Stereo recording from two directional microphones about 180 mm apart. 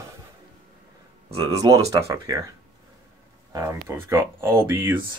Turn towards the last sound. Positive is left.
turn(degrees=-15)  # may be behind; listen again after turning